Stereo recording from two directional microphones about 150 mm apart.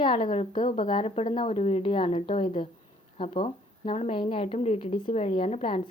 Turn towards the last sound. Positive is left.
turn(degrees=40)  # may be behind; listen again after turning